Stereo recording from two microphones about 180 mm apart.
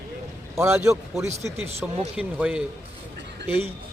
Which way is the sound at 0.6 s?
15° right (ahead or behind).